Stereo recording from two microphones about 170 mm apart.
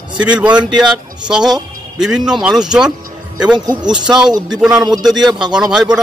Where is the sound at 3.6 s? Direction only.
25° right (ahead or behind).